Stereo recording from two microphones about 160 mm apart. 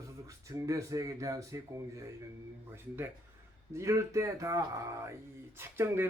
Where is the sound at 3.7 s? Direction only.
20° right (ahead or behind).